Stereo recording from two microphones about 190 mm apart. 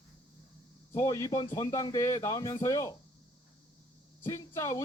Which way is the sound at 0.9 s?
15° left (ahead or behind).